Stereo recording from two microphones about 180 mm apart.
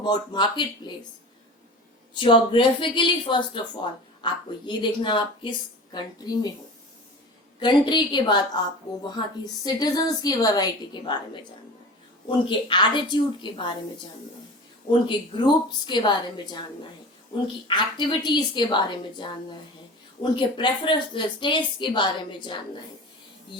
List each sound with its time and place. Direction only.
0.0 s speech: 25° left (ahead or behind)
2.1 s speech: 25° left (ahead or behind)
7.6 s speech: 25° left (ahead or behind)
12.5 s speech: 25° left (ahead or behind)
15.9 s speech: 25° left (ahead or behind)
17.7 s speech: 25° left (ahead or behind)